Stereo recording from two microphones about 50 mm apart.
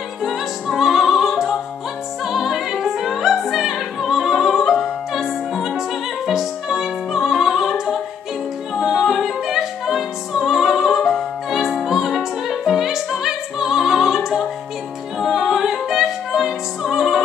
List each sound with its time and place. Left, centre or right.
0.2 s music: centre
2.2 s opera: centre
5.1 s music: centre
9.0 s music: centre